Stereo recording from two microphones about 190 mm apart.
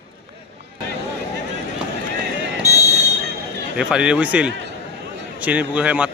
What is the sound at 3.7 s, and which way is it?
A man's voice, 5° right (ahead or behind).